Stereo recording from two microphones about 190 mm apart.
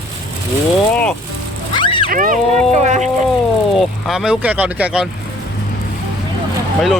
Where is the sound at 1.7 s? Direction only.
25° left (ahead or behind).